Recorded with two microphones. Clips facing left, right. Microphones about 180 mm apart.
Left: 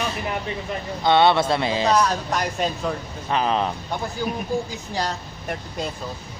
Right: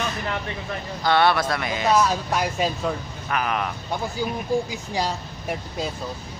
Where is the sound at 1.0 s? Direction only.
20° left (ahead or behind).